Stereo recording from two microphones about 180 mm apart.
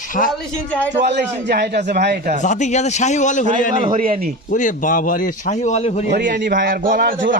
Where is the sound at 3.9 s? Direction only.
50° right (ahead or behind).